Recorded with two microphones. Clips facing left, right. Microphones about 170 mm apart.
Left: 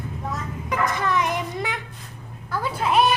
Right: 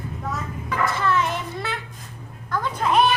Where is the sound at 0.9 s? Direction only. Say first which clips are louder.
Right 2 dB; 15° left (ahead or behind).